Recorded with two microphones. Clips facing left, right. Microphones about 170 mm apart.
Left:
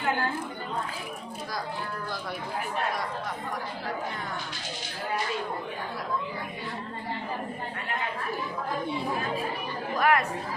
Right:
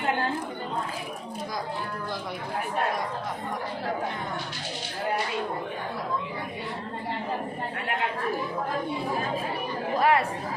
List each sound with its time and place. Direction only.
9.9 s speech: 30° right (ahead or behind)